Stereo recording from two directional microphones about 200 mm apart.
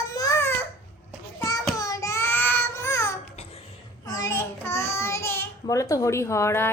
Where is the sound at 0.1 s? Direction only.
15° left (ahead or behind).